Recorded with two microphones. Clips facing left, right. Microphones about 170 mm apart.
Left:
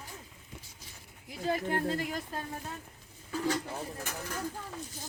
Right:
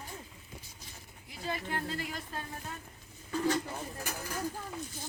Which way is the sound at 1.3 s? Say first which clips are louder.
Left 6 dB; 50° left (ahead or behind).